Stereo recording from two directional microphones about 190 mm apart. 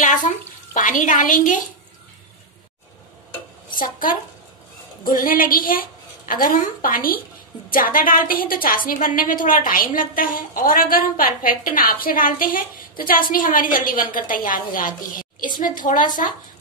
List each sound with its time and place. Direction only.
0.0 s a sound: 45° left (ahead or behind)
0.7 s a woman's voice: 40° left (ahead or behind)
3.7 s a woman's voice: 45° left (ahead or behind)